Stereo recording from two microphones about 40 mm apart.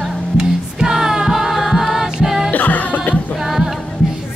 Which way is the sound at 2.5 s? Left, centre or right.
Left.